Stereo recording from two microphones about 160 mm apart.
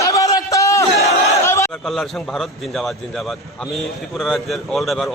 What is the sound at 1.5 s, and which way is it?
Battle cry, 20° left (ahead or behind).